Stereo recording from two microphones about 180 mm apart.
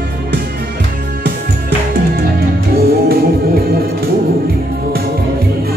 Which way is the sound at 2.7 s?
55° right (ahead or behind).